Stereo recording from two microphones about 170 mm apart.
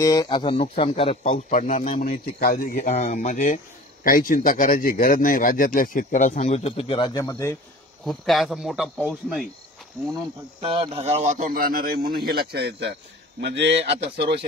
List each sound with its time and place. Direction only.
0.0 s a man's voice: 20° left (ahead or behind)
8.0 s speech: centre (ahead or behind)
10.6 s speech: 30° right (ahead or behind); by 12.9 s 65° right (ahead or behind)
13.4 s speech: 90° right